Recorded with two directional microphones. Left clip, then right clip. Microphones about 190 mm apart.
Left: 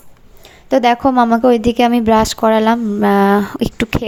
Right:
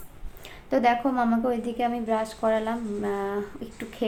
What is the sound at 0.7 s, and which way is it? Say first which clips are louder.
A woman's voice: left 11 dB; 45° left (ahead or behind).